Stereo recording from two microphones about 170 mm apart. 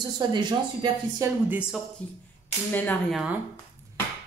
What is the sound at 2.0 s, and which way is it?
Cap gun, 10° left (ahead or behind).